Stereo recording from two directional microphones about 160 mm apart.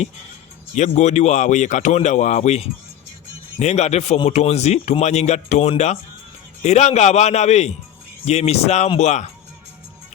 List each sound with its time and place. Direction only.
0.8 s speech: 45° left (ahead or behind)